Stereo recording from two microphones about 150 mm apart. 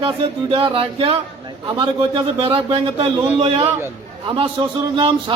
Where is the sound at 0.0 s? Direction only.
35° right (ahead or behind).